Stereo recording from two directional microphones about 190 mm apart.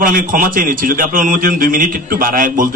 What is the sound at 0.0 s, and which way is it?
A man's voice, 50° right (ahead or behind).